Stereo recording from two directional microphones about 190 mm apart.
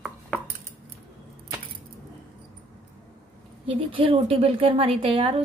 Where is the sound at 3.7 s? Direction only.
30° right (ahead or behind).